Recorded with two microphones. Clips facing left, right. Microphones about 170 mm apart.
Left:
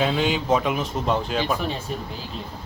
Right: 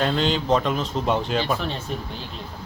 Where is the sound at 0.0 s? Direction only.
5° left (ahead or behind).